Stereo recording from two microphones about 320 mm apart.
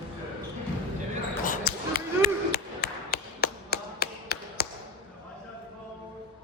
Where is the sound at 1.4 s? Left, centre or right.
Left.